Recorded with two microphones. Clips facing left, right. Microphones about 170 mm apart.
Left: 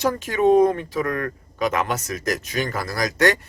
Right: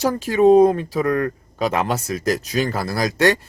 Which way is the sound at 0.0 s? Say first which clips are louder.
Right 4 dB; 35° right (ahead or behind).